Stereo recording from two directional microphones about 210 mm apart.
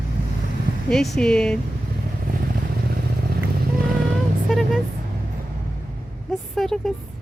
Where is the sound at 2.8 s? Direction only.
45° right (ahead or behind).